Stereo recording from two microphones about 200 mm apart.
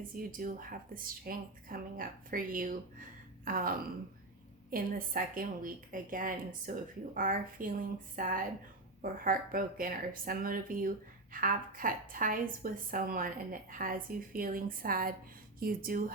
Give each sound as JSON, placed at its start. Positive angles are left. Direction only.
{"t": 0.1, "sound": "speech", "side_deg": -45}